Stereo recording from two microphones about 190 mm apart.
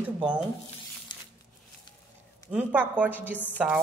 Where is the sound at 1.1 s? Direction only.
25° left (ahead or behind).